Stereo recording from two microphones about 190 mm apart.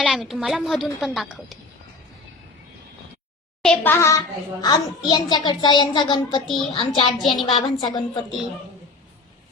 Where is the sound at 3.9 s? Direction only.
15° left (ahead or behind).